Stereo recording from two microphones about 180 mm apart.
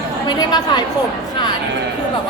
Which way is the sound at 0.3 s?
20° left (ahead or behind).